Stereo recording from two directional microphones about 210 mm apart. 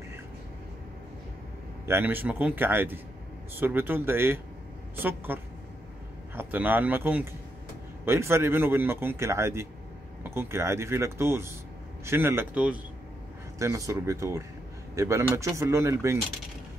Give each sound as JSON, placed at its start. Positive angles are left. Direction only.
{"t": 1.9, "sound": "speech", "side_deg": -10}